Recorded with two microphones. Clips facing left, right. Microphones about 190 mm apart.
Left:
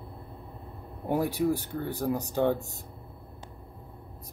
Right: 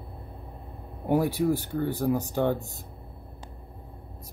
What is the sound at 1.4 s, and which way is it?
Speech, centre (ahead or behind).